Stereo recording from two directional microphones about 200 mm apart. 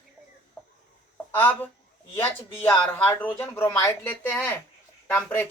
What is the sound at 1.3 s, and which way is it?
Speech, 10° left (ahead or behind).